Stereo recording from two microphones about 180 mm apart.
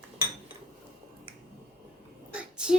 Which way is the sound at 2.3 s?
5° right (ahead or behind).